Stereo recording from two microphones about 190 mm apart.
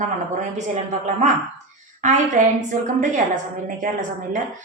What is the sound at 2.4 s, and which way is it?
Speech, 40° right (ahead or behind).